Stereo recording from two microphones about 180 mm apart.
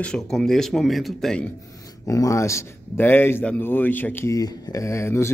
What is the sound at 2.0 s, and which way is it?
Speech, 20° left (ahead or behind).